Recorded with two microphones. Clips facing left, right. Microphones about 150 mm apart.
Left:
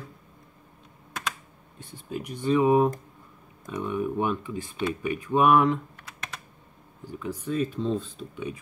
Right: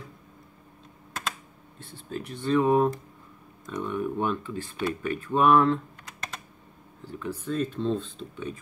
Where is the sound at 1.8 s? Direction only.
15° left (ahead or behind).